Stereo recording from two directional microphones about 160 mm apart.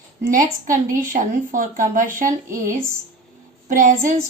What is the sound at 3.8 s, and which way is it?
Speech, 55° right (ahead or behind).